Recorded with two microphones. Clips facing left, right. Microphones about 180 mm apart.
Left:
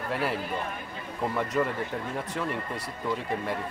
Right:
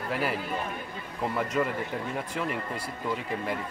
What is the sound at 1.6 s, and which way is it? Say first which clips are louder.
Speech: left 1 dB; centre (ahead or behind).